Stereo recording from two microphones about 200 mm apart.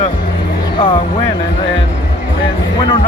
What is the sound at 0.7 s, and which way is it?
Speech, 25° left (ahead or behind).